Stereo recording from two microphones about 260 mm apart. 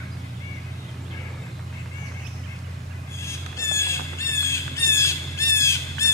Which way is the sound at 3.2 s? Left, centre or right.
Centre.